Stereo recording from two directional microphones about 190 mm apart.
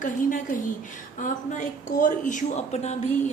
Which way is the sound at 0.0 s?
45° left (ahead or behind).